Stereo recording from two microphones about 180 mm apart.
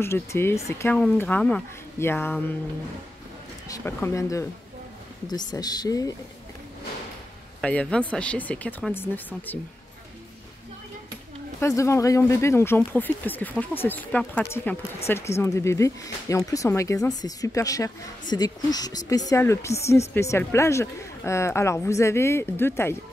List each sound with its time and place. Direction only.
0.0 s speech: 15° left (ahead or behind)
3.6 s speech: 15° left (ahead or behind)
7.6 s speech: 5° left (ahead or behind)
11.6 s speech: 15° left (ahead or behind)